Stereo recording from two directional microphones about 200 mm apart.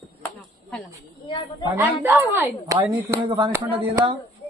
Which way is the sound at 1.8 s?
10° right (ahead or behind).